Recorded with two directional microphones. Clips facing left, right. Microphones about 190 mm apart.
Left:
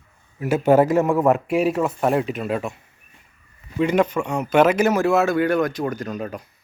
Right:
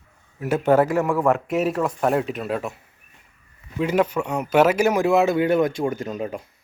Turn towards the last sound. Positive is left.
turn(degrees=-25)  # may be behind; listen again after turning